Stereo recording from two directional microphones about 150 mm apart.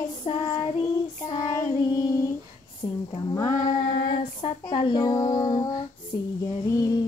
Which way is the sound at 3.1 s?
25° left (ahead or behind).